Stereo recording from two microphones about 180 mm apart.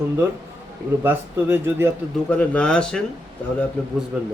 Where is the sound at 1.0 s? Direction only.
15° right (ahead or behind).